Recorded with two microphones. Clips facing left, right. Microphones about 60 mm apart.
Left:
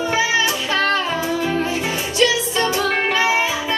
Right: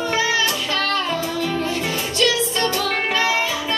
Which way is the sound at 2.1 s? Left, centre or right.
Centre.